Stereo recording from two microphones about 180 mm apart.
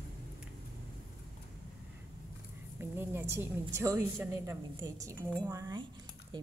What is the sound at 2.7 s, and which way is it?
A woman's voice, 10° right (ahead or behind).